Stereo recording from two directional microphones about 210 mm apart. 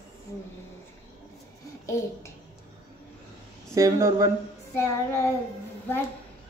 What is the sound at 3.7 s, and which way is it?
Speech, 15° right (ahead or behind).